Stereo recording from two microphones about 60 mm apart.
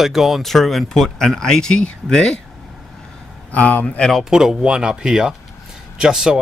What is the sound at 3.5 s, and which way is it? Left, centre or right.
Speech, left.